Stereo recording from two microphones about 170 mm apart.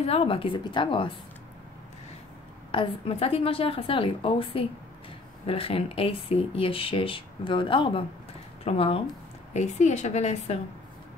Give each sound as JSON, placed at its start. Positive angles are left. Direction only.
{"t": 0.0, "sound": "speech", "side_deg": 35}
{"t": 2.7, "sound": "speech", "side_deg": 30}